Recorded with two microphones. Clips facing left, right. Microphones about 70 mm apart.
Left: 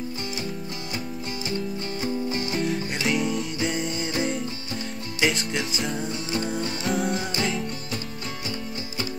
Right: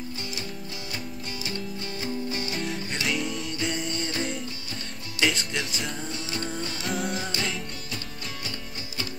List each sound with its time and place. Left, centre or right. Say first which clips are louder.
2.0 s music: left 3 dB; left
2.5 s music: left 5 dB; centre
6.3 s music: left 6 dB; centre
6.8 s music: left 4 dB; centre